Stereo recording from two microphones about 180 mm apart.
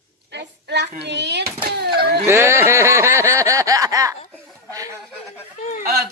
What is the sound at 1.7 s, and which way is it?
Fowl, 65° right (ahead or behind).